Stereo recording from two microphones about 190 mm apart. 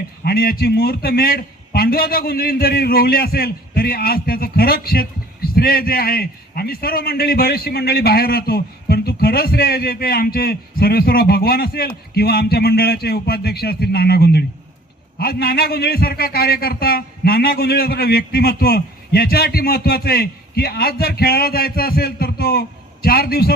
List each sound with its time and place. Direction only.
0.3 s a man's voice: 50° left (ahead or behind)